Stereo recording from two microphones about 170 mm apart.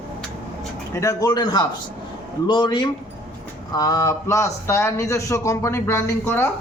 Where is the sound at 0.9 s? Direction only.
20° left (ahead or behind).